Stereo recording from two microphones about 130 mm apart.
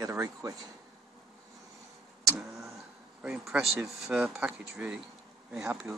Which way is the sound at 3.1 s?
5° right (ahead or behind).